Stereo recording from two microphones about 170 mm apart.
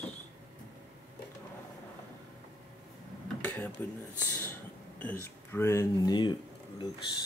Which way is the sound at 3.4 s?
10° left (ahead or behind).